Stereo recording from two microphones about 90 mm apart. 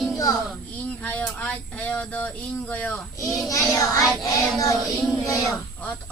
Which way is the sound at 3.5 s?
40° left (ahead or behind).